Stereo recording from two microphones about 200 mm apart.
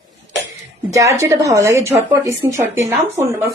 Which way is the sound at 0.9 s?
15° right (ahead or behind).